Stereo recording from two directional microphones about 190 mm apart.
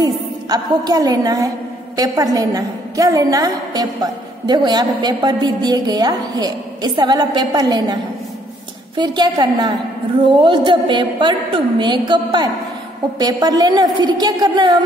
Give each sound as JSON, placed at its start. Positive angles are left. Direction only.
{"t": 0.0, "sound": "a woman's voice", "side_deg": -20}